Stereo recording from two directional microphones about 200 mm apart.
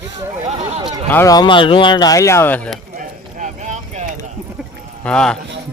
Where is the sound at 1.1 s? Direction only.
15° left (ahead or behind).